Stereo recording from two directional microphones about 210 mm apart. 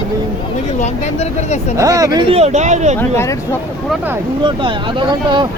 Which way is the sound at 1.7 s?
15° right (ahead or behind).